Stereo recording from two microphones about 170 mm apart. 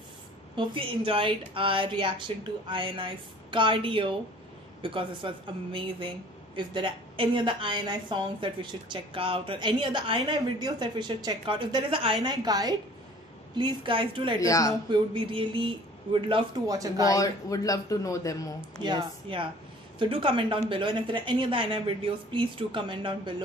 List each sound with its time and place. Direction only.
0.6 s a woman's voice: 30° right (ahead or behind)
14.4 s a man's voice: 20° left (ahead or behind)
14.9 s a woman's voice: 30° right (ahead or behind)
17.1 s a man's voice: 20° left (ahead or behind)
18.8 s a woman's voice: 30° right (ahead or behind)